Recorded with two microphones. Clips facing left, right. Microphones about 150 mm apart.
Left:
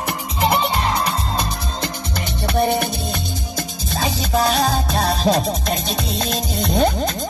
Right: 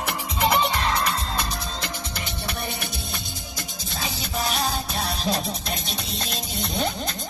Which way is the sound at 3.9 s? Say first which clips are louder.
Left 10 dB; 90° left.